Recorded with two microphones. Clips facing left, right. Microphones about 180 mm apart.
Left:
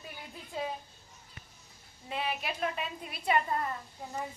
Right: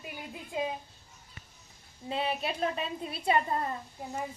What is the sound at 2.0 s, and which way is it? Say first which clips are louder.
A woman's voice: right 3 dB; 30° right (ahead or behind).